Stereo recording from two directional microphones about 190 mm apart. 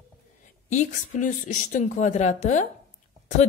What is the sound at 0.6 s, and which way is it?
Speech, 40° left (ahead or behind).